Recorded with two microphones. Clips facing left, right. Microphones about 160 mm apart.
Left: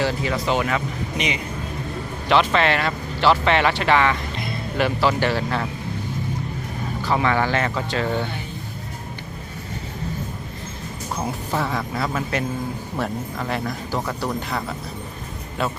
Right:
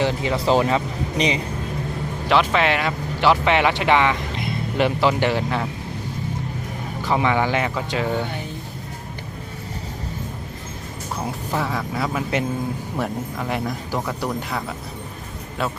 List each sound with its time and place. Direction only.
0.0 s speech: 20° right (ahead or behind)
2.3 s speech: 10° right (ahead or behind)
7.0 s speech: 15° right (ahead or behind)
11.5 s speech: 5° right (ahead or behind)